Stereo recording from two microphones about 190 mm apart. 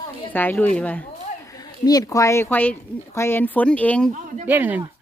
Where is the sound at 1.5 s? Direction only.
20° left (ahead or behind).